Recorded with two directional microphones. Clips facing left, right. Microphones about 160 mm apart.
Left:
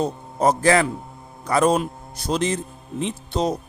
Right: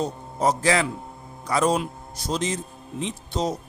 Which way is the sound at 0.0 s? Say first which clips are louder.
Left 3 dB; 55° left (ahead or behind).